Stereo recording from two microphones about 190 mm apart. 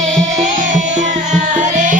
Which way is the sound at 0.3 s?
45° right (ahead or behind).